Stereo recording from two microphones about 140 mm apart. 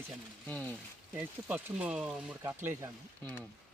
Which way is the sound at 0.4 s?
10° left (ahead or behind).